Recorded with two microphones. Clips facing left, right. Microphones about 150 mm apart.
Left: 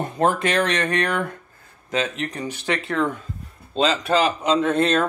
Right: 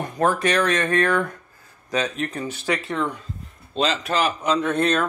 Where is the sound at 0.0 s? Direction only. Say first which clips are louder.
Left 1 dB; 25° left (ahead or behind).